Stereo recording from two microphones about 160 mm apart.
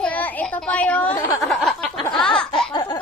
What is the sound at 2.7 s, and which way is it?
Speech, 25° left (ahead or behind).